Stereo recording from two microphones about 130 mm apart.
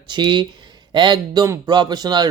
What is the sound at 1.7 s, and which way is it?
Speech, 35° right (ahead or behind).